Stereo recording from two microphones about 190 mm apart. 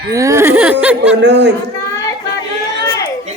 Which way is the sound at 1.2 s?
65° right (ahead or behind).